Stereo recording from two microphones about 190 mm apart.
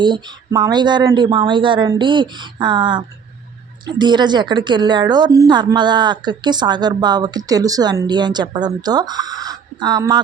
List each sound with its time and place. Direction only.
0.0 s a woman's voice: 25° right (ahead or behind)